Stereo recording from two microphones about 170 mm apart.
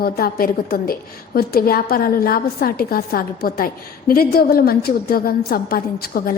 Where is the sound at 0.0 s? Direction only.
60° left (ahead or behind).